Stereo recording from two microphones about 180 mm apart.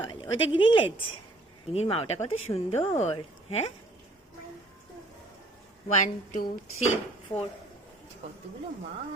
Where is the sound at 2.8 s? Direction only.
35° left (ahead or behind).